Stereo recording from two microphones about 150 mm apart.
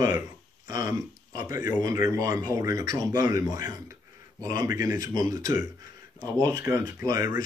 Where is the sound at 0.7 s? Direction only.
25° right (ahead or behind).